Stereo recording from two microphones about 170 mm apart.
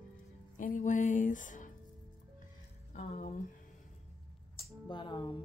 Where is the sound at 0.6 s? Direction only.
50° left (ahead or behind).